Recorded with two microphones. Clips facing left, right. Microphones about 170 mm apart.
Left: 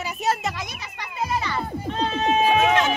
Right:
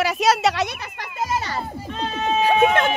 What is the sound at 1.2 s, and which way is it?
Children playing, 40° right (ahead or behind).